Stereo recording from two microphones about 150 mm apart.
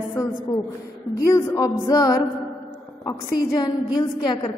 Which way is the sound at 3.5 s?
30° left (ahead or behind).